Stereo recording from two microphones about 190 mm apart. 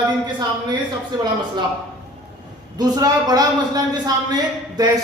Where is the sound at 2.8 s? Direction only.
20° right (ahead or behind).